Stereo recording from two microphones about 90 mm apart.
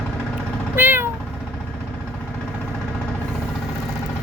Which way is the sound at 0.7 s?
25° right (ahead or behind).